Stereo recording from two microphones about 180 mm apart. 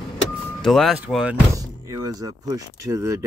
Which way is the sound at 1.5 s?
20° right (ahead or behind).